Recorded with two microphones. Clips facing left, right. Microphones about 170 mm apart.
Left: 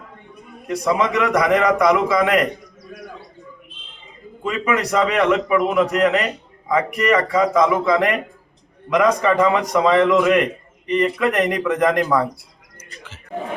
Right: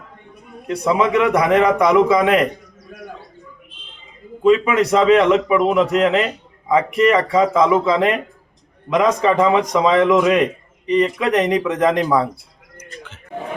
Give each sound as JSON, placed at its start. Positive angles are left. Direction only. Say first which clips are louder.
{"t": 0.8, "sound": "a man's voice", "louder": "right 3 dB", "side_deg": -25}
{"t": 4.4, "sound": "a man's voice", "louder": "right 7 dB", "side_deg": -20}